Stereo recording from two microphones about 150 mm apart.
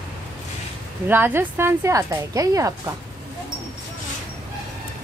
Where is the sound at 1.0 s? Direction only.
15° right (ahead or behind).